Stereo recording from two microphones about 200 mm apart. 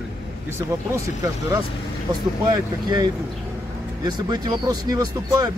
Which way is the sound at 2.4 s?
20° right (ahead or behind).